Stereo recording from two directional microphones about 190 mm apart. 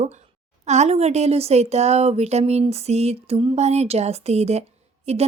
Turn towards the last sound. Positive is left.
turn(degrees=-35)  # may be behind; listen again after turning